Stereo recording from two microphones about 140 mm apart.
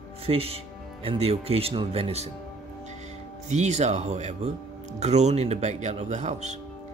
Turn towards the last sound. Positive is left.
turn(degrees=-55)  # may be behind; listen again after turning